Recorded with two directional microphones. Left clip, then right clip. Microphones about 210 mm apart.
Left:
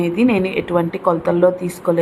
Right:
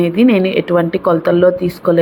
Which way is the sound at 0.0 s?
10° right (ahead or behind).